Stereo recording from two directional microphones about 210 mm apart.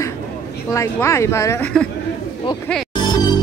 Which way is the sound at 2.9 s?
20° left (ahead or behind).